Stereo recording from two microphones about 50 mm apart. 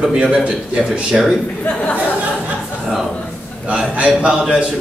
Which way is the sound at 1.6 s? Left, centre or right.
Left.